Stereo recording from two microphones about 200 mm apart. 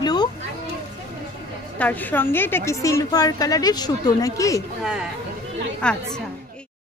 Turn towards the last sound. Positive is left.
turn(degrees=5)  # may be behind; listen again after turning